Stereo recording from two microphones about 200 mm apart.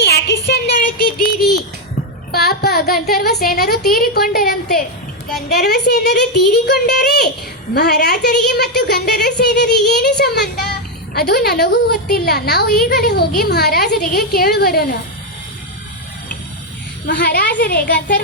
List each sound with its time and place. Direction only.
0.0 s a sound: 55° left (ahead or behind)
3.9 s a woman's voice: 50° left (ahead or behind)
17.1 s a woman's voice: 60° left (ahead or behind)